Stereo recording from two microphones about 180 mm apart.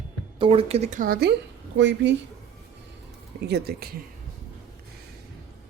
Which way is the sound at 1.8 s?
85° right.